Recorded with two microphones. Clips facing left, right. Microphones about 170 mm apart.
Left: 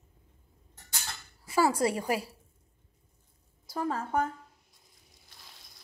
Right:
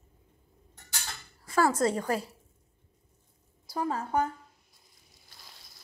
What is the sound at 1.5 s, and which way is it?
Speech, 10° left (ahead or behind).